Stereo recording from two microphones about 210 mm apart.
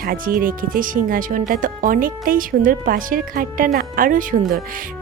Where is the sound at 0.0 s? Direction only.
45° right (ahead or behind).